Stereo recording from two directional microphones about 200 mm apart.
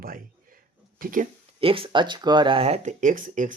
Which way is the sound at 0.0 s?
45° right (ahead or behind).